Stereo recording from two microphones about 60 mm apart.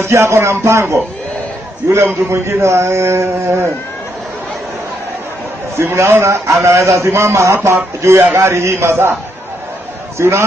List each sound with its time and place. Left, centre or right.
0.0 s a man's voice: right
2.2 s a man's voice: right
5.8 s a man's voice: right
10.1 s a man's voice: right